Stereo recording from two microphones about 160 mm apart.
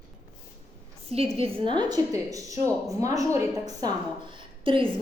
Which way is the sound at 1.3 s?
35° right (ahead or behind).